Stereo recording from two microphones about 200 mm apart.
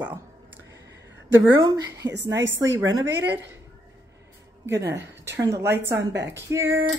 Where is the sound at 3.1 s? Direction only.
60° right (ahead or behind).